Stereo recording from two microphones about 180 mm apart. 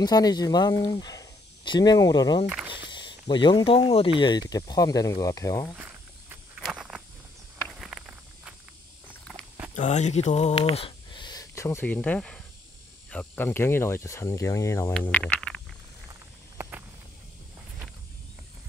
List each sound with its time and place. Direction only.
0.0 s speech: 20° left (ahead or behind)
2.4 s speech: 10° right (ahead or behind)
2.9 s speech: 25° left (ahead or behind)
5.8 s walk: 10° right (ahead or behind)
9.8 s a sound: 40° left (ahead or behind); by 12.4 s 5° left (ahead or behind)
13.1 s speech: 10° left (ahead or behind)